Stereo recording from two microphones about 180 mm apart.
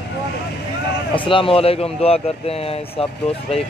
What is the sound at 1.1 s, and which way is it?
A man's voice, 30° left (ahead or behind).